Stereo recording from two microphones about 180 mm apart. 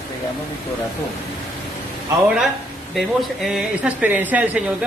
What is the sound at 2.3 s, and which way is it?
Speech, centre (ahead or behind).